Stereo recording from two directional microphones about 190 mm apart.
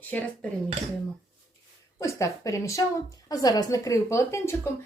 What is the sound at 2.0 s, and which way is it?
A woman's voice, 15° left (ahead or behind).